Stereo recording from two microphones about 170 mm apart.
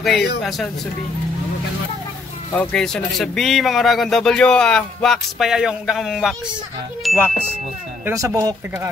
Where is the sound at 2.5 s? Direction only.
5° left (ahead or behind).